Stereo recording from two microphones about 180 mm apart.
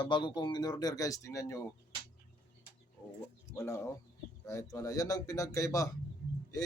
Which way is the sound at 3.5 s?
15° left (ahead or behind).